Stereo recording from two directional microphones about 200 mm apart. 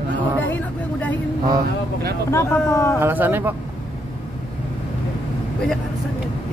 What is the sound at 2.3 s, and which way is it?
Speech, 10° left (ahead or behind).